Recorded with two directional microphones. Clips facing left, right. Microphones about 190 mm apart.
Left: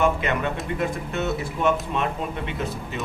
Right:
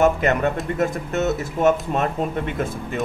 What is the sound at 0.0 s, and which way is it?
Speech, 45° right (ahead or behind).